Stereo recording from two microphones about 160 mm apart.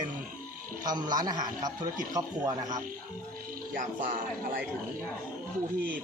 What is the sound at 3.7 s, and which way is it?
Speech, 55° right (ahead or behind).